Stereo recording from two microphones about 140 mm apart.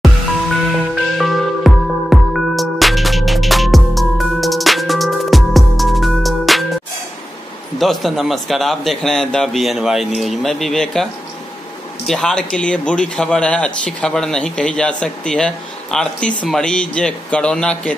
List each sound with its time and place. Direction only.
1.1 s music: centre (ahead or behind)
7.8 s speech: centre (ahead or behind)
12.1 s speech: 5° left (ahead or behind)